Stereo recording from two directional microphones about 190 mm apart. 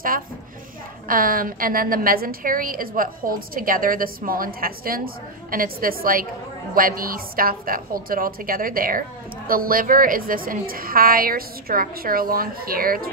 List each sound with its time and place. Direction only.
1.0 s a woman's voice: 50° right (ahead or behind)